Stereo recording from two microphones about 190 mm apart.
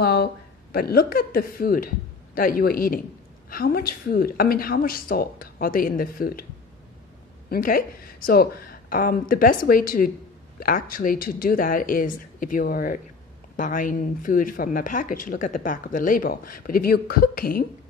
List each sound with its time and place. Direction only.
0.0 s a woman's voice: 55° left (ahead or behind)
7.4 s speech: 50° left (ahead or behind)